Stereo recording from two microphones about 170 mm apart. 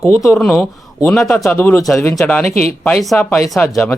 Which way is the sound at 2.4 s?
40° right (ahead or behind).